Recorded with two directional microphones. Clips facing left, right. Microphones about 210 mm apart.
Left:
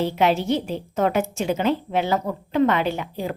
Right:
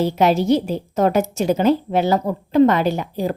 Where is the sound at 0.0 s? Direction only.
40° right (ahead or behind).